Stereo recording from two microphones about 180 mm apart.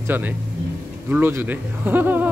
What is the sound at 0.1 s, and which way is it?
Speech, 10° right (ahead or behind).